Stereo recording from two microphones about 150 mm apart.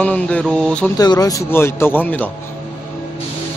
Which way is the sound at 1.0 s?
25° left (ahead or behind).